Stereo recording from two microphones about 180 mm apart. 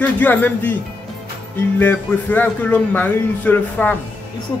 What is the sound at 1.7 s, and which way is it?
Speech, 10° left (ahead or behind).